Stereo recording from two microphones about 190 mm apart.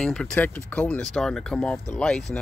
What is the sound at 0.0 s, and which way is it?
Speech, 5° left (ahead or behind).